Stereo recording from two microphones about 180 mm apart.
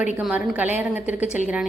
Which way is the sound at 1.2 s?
40° left (ahead or behind).